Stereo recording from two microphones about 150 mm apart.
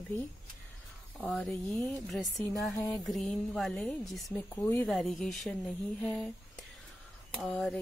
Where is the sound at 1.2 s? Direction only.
5° left (ahead or behind).